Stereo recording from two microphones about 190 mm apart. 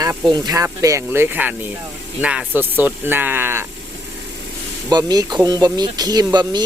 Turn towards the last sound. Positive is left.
turn(degrees=-20)  # may be behind; listen again after turning